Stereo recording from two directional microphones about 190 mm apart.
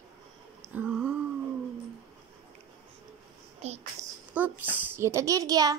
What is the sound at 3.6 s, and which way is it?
Speech, 35° right (ahead or behind).